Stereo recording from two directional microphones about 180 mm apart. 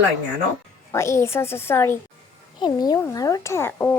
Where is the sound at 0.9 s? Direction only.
15° left (ahead or behind).